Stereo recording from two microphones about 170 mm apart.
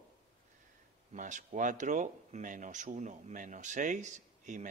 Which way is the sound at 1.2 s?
45° right (ahead or behind).